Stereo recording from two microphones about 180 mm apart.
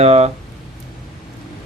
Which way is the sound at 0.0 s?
35° right (ahead or behind).